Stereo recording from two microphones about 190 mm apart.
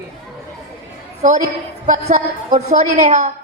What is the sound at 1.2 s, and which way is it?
A woman's voice, 40° right (ahead or behind).